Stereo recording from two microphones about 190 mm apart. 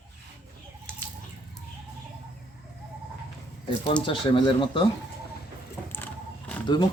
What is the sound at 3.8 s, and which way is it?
Speech, 25° left (ahead or behind).